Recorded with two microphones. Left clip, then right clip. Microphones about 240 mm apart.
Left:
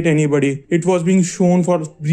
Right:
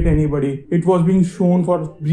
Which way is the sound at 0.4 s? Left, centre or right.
Left.